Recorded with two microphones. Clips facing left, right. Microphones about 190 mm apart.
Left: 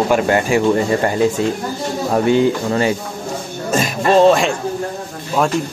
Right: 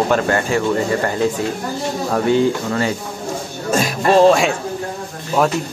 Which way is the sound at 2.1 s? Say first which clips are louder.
Left 2 dB; 20° left (ahead or behind).